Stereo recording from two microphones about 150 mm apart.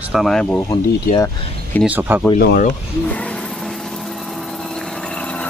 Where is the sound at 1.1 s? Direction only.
65° left (ahead or behind).